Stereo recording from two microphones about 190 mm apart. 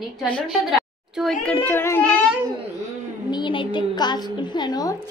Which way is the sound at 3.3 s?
25° left (ahead or behind).